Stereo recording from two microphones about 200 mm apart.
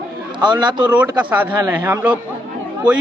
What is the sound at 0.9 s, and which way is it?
A man's voice, 5° right (ahead or behind).